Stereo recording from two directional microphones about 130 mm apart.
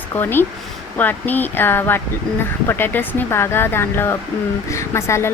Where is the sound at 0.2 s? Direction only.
15° left (ahead or behind).